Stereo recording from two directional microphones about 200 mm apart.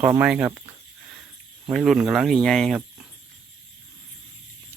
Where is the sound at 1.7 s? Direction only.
Centre (ahead or behind).